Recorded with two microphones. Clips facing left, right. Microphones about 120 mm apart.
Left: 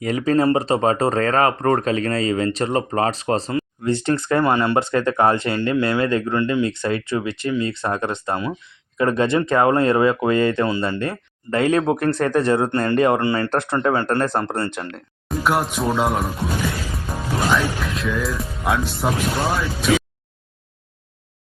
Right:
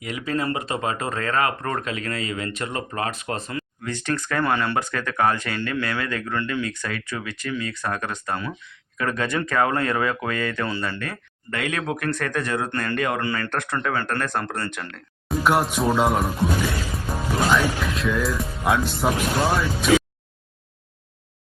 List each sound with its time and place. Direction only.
0.0 s speech: 40° left (ahead or behind)
15.3 s speech: centre (ahead or behind)